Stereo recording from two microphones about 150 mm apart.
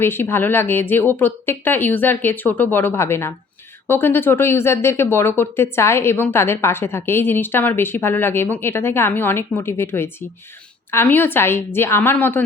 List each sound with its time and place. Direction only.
0.0 s speech: 15° left (ahead or behind)